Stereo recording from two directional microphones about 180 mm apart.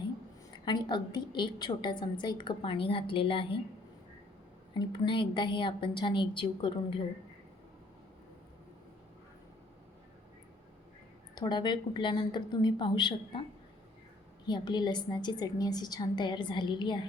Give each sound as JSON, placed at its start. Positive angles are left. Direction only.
{"t": 0.5, "sound": "a woman's voice", "side_deg": 25}
{"t": 4.7, "sound": "a woman's voice", "side_deg": 25}
{"t": 11.3, "sound": "a woman's voice", "side_deg": 25}
{"t": 14.4, "sound": "a woman's voice", "side_deg": 25}